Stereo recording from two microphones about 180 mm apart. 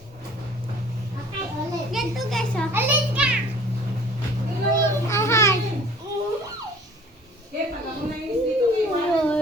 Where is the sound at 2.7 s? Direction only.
10° right (ahead or behind).